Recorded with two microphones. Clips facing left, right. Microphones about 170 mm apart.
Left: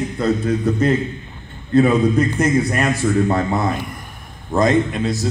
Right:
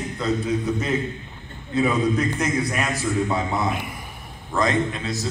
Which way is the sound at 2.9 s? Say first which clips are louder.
Left 7 dB; 55° left (ahead or behind).